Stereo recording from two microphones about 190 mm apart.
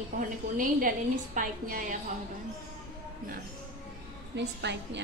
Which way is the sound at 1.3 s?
45° right (ahead or behind).